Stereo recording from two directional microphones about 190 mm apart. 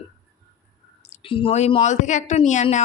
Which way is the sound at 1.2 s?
30° left (ahead or behind).